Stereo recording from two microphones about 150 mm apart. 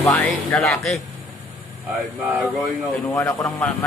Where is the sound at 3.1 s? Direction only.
20° left (ahead or behind).